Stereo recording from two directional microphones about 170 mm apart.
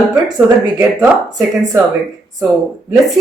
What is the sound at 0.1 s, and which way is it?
Speech, 10° right (ahead or behind).